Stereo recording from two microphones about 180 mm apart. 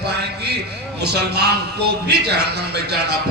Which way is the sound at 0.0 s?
65° right (ahead or behind).